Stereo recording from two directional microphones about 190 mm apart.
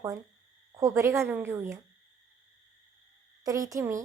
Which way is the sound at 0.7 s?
15° right (ahead or behind).